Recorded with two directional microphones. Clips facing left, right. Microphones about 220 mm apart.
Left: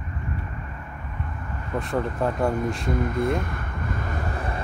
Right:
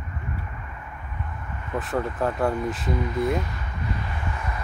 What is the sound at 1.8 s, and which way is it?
Speech, centre (ahead or behind).